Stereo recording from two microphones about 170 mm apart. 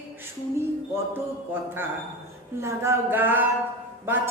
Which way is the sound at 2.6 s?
15° right (ahead or behind).